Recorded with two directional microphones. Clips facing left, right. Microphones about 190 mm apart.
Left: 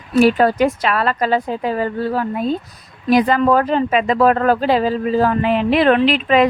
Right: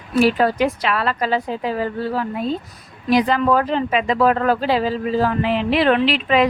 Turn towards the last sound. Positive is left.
turn(degrees=45)  # may be behind; listen again after turning